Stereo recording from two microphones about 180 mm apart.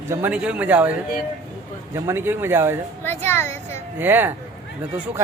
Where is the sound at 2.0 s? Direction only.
15° right (ahead or behind).